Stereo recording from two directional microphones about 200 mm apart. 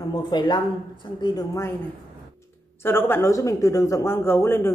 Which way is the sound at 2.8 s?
10° left (ahead or behind).